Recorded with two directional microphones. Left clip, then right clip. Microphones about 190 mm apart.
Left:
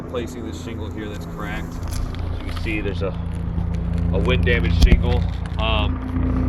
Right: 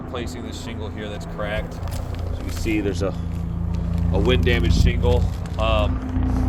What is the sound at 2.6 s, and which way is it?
Speech, 90° right.